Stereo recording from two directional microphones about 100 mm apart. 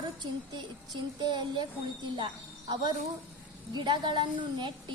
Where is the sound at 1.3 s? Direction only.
50° right (ahead or behind).